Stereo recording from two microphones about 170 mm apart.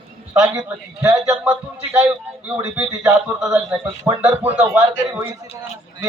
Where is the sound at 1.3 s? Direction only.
15° right (ahead or behind).